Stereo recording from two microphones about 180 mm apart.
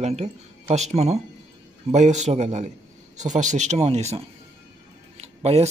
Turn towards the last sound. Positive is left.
turn(degrees=-35)  # may be behind; listen again after turning